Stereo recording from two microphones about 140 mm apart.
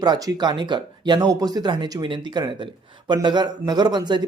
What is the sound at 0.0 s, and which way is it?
A man's voice, 25° right (ahead or behind).